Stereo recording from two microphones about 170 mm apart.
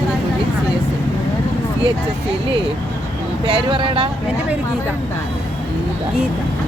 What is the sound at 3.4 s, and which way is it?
Speech, 30° right (ahead or behind).